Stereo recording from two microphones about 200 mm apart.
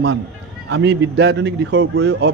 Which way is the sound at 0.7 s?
60° right (ahead or behind).